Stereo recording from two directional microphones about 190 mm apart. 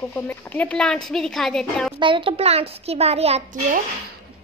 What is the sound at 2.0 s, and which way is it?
A child's voice, 25° right (ahead or behind).